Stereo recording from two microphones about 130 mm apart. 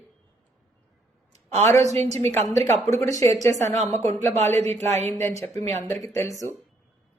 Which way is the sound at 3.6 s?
60° right (ahead or behind).